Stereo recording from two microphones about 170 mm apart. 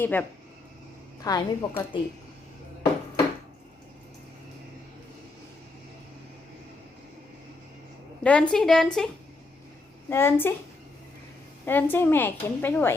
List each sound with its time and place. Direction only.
0.0 s a woman's voice: 10° left (ahead or behind)
1.2 s a woman's voice: 20° left (ahead or behind)
8.2 s a woman's voice: 5° left (ahead or behind)
10.1 s a woman's voice: 15° left (ahead or behind)
11.6 s a woman's voice: 10° left (ahead or behind)